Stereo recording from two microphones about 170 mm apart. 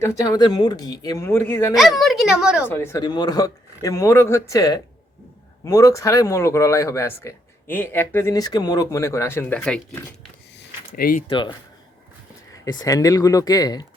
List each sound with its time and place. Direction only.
0.0 s speech: 25° left (ahead or behind)
2.0 s speech: centre (ahead or behind)
2.6 s speech: 15° left (ahead or behind)
3.0 s speech: 25° left (ahead or behind)
10.9 s speech: 60° left (ahead or behind)
11.3 s speech: 25° left (ahead or behind)
12.6 s speech: 20° left (ahead or behind)